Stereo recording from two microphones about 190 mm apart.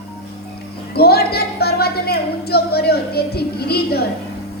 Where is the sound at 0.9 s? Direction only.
55° left (ahead or behind).